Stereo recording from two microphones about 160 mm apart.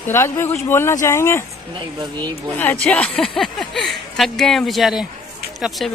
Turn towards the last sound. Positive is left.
turn(degrees=-5)  # may be behind; listen again after turning